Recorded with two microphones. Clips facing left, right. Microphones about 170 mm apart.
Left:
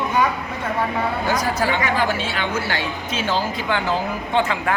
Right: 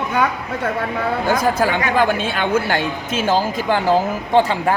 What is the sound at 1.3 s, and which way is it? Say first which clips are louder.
A woman's voice: right 5 dB; 55° right (ahead or behind).